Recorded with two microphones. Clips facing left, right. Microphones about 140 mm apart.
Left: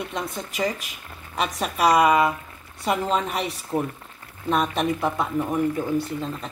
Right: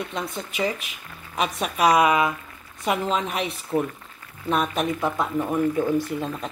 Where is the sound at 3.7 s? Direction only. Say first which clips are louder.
Right 2 dB; 15° left (ahead or behind).